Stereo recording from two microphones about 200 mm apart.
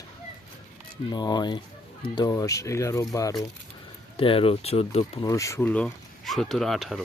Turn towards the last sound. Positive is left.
turn(degrees=0)  # may be behind; listen again after turning